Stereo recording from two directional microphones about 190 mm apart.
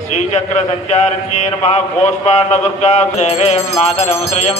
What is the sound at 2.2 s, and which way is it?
Mantra, 35° left (ahead or behind).